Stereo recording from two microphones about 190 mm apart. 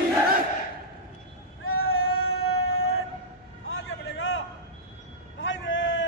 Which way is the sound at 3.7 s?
75° left (ahead or behind).